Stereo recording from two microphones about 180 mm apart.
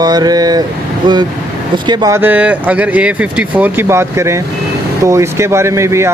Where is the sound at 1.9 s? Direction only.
20° right (ahead or behind).